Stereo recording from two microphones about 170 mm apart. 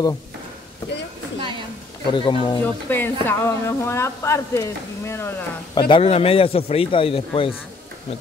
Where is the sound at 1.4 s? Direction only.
30° right (ahead or behind).